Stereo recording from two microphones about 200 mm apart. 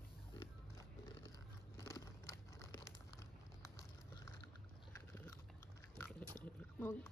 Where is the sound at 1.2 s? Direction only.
15° left (ahead or behind).